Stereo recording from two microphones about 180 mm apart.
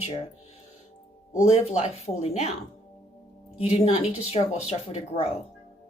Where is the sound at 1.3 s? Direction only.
35° left (ahead or behind).